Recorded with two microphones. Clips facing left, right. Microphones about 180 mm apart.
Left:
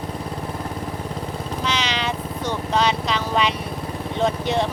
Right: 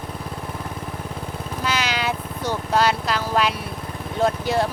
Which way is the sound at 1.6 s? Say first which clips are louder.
Right 1 dB; 5° right (ahead or behind).